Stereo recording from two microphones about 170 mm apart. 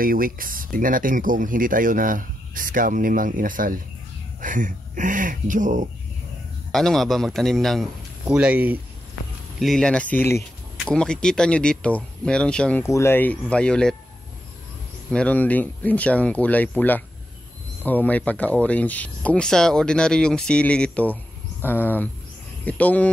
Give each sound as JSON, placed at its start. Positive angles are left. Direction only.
{"t": 0.0, "sound": "speech", "side_deg": -55}
{"t": 6.7, "sound": "a man's voice", "side_deg": 0}
{"t": 12.8, "sound": "speech", "side_deg": 15}
{"t": 15.0, "sound": "speech", "side_deg": 5}